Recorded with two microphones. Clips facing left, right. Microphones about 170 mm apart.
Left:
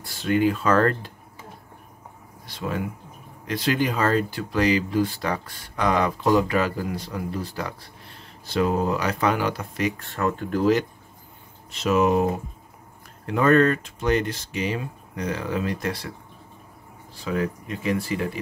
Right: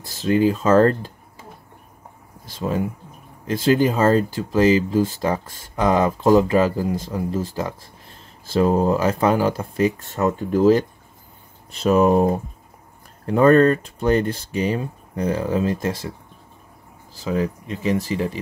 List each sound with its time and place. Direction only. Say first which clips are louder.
0.2 s speech: right 3 dB; 35° right (ahead or behind)
3.7 s speech: right 6 dB; 30° right (ahead or behind)
11.8 s speech: right 4 dB; 35° right (ahead or behind)
17.3 s speech: right 3 dB; 25° right (ahead or behind)